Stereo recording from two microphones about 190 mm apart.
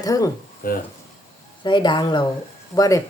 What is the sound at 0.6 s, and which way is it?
Speech, 50° left (ahead or behind).